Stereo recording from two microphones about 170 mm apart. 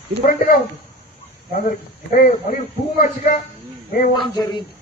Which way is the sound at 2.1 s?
55° left (ahead or behind).